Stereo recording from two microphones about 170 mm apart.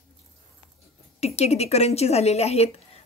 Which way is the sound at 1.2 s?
40° left (ahead or behind).